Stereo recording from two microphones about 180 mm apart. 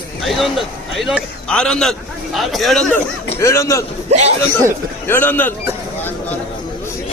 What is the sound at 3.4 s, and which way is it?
Speech, 15° left (ahead or behind).